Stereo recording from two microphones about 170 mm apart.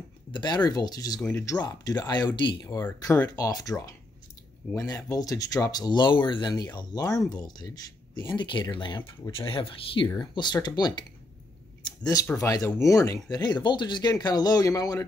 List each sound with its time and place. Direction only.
0.3 s speech: 25° left (ahead or behind)